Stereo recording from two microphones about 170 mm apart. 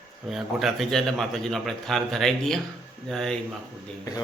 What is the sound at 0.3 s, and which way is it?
A man's voice, centre (ahead or behind).